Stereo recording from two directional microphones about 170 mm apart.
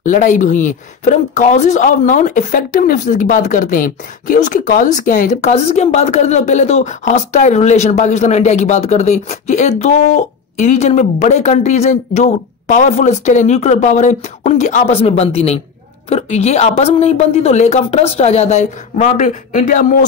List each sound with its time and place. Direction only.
0.0 s a woman's voice: 50° left (ahead or behind)